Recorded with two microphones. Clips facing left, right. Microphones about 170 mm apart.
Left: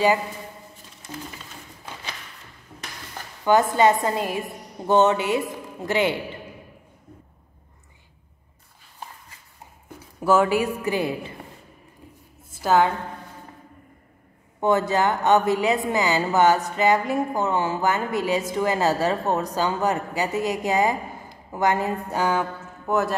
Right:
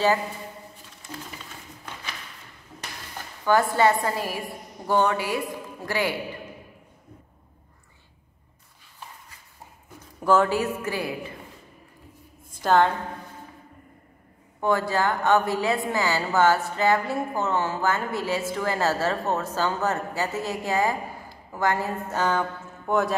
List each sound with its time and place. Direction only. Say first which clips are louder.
3.4 s a woman's voice: left 2 dB; 20° left (ahead or behind)
10.2 s a woman's voice: left 2 dB; 10° left (ahead or behind)
12.4 s a sound: left 1 dB; 5° left (ahead or behind)
14.6 s a woman's voice: left 3 dB; 20° left (ahead or behind); by 23.1 s centre (ahead or behind)